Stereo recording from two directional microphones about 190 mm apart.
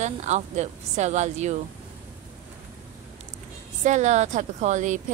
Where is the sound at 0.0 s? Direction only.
35° right (ahead or behind).